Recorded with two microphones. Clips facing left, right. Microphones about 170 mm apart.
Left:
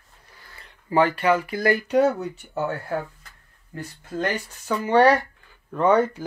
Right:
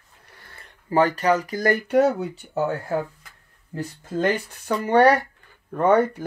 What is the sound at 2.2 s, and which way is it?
Speech, 35° right (ahead or behind).